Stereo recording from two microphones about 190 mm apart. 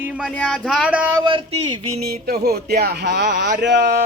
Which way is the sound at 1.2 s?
30° right (ahead or behind).